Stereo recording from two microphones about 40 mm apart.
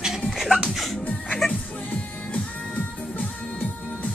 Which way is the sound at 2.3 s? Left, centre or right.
Left.